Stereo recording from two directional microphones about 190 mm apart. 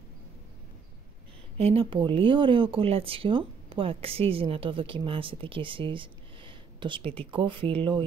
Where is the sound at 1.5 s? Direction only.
30° right (ahead or behind).